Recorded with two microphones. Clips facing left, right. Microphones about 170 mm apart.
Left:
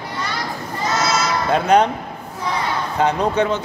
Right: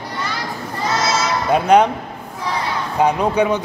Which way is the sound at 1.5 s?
10° right (ahead or behind).